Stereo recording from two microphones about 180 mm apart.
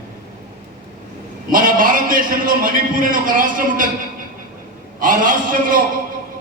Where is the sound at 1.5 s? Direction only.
50° right (ahead or behind).